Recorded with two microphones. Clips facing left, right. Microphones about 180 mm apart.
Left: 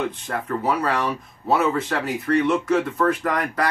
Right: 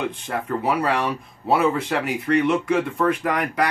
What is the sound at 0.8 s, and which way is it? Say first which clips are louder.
Speech: right 1 dB; 25° right (ahead or behind).